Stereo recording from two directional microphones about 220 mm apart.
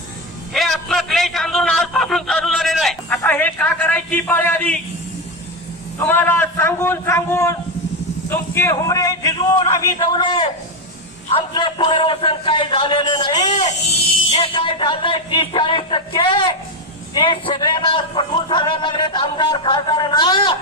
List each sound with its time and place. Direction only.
0.5 s a sound: centre (ahead or behind)
6.0 s a man's voice: 10° left (ahead or behind)
13.5 s a man's voice: 30° left (ahead or behind)